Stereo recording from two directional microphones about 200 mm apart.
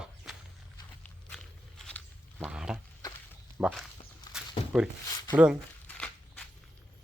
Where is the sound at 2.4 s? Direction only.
5° right (ahead or behind).